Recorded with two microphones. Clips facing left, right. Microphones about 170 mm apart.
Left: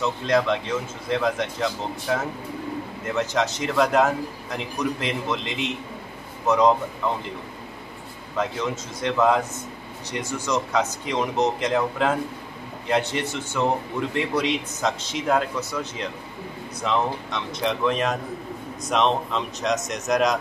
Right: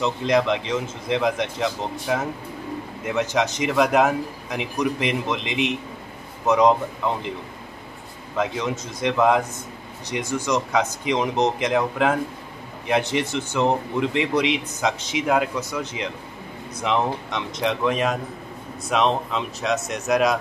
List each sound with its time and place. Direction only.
0.0 s speech: 15° right (ahead or behind)
3.2 s speech: 15° right (ahead or behind)
8.4 s speech: 15° right (ahead or behind)